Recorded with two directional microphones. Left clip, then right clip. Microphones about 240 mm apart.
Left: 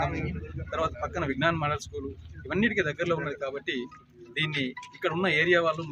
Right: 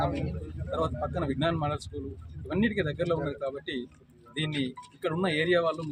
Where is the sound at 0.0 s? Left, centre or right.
Right.